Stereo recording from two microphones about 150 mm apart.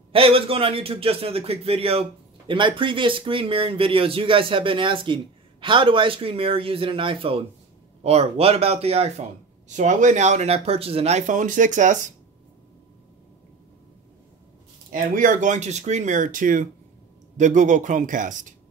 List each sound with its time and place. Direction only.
0.1 s a man's voice: 40° right (ahead or behind)
9.8 s speech: 55° right (ahead or behind)
14.9 s speech: 65° right (ahead or behind)